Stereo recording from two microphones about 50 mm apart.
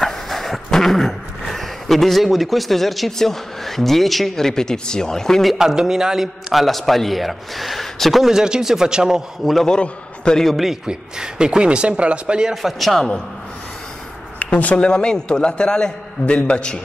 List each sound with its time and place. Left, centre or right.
0.0 s dog: centre
5.5 s a man's voice: centre
8.2 s speech: centre
9.4 s a man's voice: centre
9.7 s a man's voice: centre
10.4 s a man's voice: centre
10.9 s speech: centre
12.6 s a man's voice: centre
14.4 s a man's voice: left